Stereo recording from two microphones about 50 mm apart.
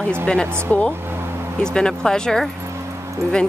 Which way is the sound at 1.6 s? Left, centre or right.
Centre.